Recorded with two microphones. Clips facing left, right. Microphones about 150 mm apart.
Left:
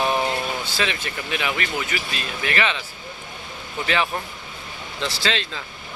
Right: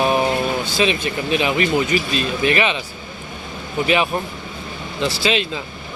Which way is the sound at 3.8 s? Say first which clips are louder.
Right 5 dB; 15° right (ahead or behind).